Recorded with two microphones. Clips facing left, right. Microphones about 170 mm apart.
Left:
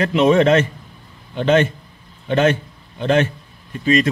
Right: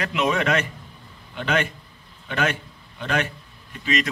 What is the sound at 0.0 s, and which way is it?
A man's voice, 30° left (ahead or behind).